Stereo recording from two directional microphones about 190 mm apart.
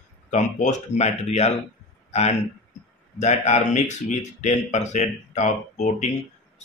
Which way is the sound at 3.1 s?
35° left (ahead or behind).